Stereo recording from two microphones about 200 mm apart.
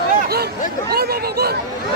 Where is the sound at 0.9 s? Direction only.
50° right (ahead or behind).